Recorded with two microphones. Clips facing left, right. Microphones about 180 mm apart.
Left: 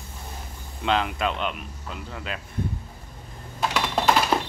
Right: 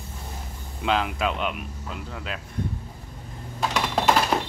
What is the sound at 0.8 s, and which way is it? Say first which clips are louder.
Speech: even; 5° right (ahead or behind).